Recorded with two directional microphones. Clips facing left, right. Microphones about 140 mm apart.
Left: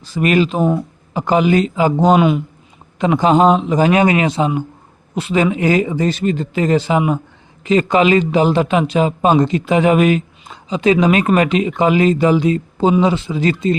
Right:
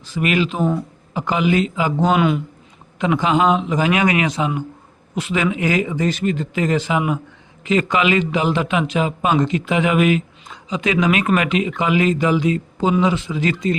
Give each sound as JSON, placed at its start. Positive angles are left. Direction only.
{"t": 0.0, "sound": "speech", "side_deg": 40}